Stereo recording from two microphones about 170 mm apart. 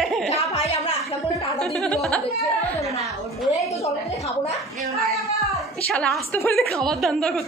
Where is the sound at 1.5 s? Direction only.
5° left (ahead or behind).